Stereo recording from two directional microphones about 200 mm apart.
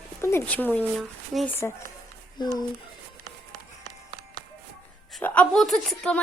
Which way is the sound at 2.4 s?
20° left (ahead or behind).